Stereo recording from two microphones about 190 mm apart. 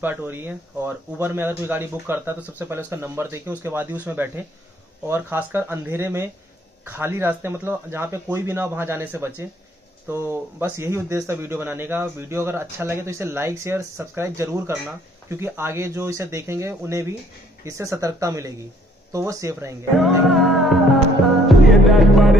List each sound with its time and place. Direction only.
0.0 s speech: 10° right (ahead or behind)
20.0 s music: centre (ahead or behind)